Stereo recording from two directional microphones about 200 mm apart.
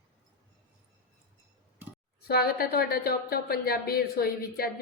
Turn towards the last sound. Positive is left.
turn(degrees=50)  # may be behind; listen again after turning